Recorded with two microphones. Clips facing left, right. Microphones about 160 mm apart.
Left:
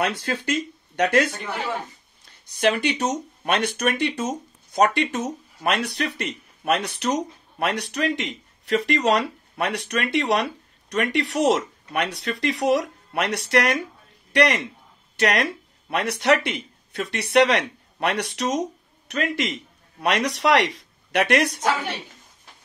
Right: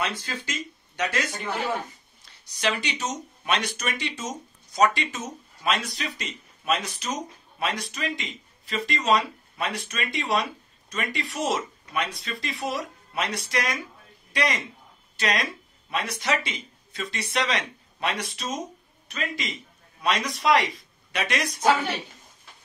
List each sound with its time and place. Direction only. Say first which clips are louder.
0.0 s speech: left 6 dB; 60° left (ahead or behind)
2.4 s speech: left 7 dB; 55° left (ahead or behind)